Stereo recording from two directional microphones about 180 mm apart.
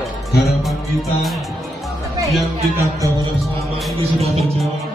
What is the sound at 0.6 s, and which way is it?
Music, centre (ahead or behind).